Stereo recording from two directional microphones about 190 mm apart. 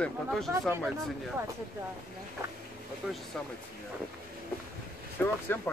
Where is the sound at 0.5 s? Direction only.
15° right (ahead or behind).